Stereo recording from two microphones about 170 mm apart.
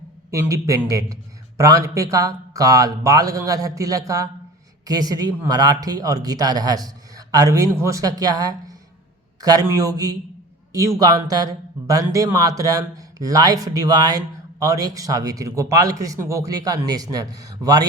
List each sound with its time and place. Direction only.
0.3 s speech: 20° right (ahead or behind)